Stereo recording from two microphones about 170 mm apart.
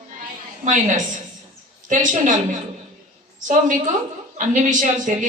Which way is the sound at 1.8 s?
45° right (ahead or behind).